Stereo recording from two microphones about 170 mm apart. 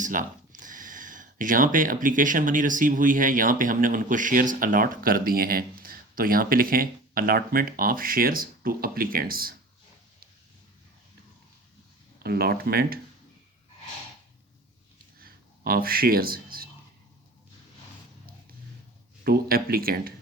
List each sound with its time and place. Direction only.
0.0 s speech: 50° right (ahead or behind)
12.2 s speech: 65° right (ahead or behind)
15.2 s a sound: 60° right (ahead or behind)
19.2 s speech: 60° right (ahead or behind)